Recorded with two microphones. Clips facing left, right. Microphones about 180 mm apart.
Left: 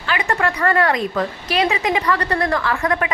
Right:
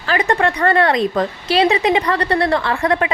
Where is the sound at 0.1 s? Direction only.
35° right (ahead or behind).